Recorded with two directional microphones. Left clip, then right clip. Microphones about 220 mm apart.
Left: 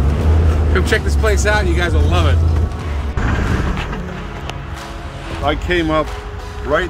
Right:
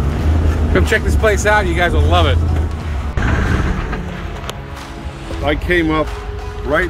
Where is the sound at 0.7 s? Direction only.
20° right (ahead or behind).